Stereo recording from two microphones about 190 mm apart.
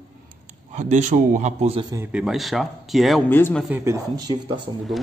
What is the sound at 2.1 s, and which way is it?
Speech, centre (ahead or behind).